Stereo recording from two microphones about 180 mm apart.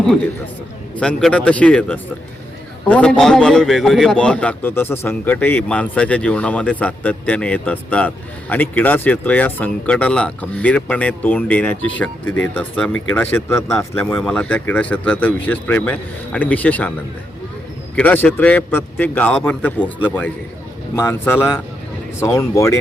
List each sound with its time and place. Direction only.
0.9 s a man's voice: 5° left (ahead or behind)
17.9 s a man's voice: 10° left (ahead or behind)